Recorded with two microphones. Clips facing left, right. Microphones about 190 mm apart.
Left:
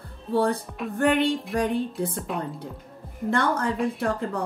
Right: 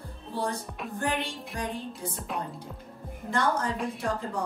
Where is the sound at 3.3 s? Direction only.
60° left (ahead or behind).